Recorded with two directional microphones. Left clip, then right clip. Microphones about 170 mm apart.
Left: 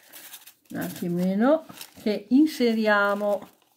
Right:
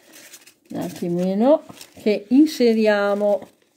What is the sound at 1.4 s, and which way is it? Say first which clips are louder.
Speech: right 5 dB; 25° right (ahead or behind).